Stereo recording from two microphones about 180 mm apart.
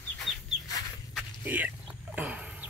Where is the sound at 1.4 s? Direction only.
10° right (ahead or behind).